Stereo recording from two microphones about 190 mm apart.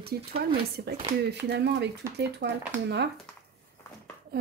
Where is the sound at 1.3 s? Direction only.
60° right (ahead or behind).